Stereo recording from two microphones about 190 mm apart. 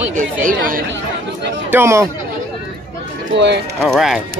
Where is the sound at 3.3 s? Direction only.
65° right (ahead or behind).